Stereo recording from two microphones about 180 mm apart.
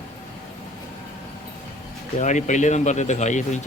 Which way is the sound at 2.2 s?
40° left (ahead or behind).